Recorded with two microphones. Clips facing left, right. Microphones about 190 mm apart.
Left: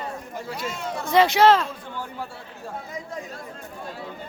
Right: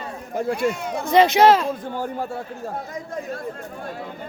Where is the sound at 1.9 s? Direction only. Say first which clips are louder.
Right 7 dB; 45° right (ahead or behind).